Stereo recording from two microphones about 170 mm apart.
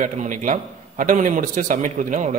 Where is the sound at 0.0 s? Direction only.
50° right (ahead or behind).